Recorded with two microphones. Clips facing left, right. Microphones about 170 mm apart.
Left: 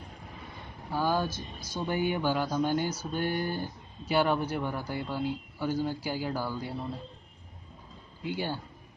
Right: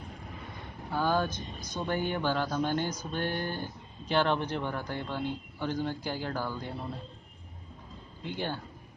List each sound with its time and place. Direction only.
0.9 s speech: 10° left (ahead or behind)
8.2 s speech: 5° left (ahead or behind)